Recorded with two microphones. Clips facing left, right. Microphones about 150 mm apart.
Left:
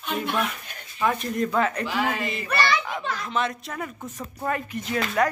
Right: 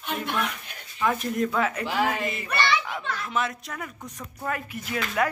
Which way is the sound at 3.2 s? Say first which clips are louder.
Even; 5° right (ahead or behind).